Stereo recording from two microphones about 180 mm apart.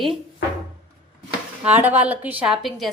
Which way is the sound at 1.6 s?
10° right (ahead or behind).